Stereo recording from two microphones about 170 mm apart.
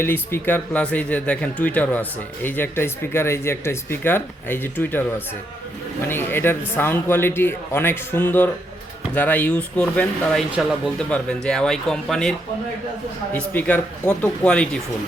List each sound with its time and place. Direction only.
0.0 s speech: 10° left (ahead or behind)
6.1 s speech: 15° left (ahead or behind)
13.3 s speech: 10° left (ahead or behind)